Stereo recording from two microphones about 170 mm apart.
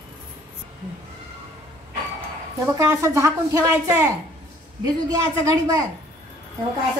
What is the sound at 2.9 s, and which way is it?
A woman's voice, 15° right (ahead or behind).